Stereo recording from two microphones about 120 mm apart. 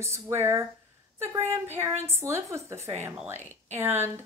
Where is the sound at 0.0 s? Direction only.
20° right (ahead or behind).